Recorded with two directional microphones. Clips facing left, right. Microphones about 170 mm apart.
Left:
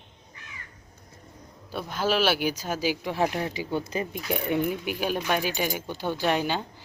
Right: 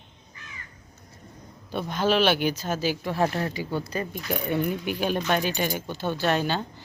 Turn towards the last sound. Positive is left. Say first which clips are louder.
# right 1 dB
turn(degrees=10)  # may be behind; listen again after turning